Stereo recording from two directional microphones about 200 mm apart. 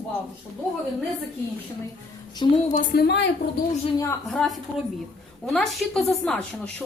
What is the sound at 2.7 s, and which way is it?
Speech, 45° left (ahead or behind).